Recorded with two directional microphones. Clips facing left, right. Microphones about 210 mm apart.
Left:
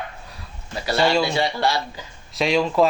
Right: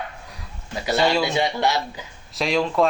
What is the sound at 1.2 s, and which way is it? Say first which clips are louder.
Speech: even; 20° right (ahead or behind).